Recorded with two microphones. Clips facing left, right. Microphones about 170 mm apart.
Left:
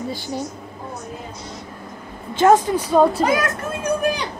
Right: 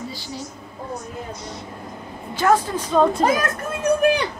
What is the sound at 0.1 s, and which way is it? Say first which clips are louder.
Speech: left 6 dB; 55° left (ahead or behind).